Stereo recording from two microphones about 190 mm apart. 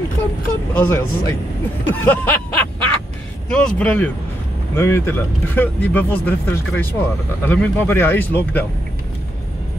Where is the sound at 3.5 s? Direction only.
5° left (ahead or behind).